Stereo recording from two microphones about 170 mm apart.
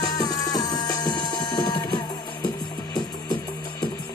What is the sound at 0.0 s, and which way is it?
Music, 25° left (ahead or behind).